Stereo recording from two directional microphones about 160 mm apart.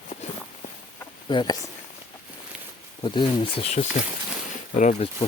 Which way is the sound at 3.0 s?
35° left (ahead or behind).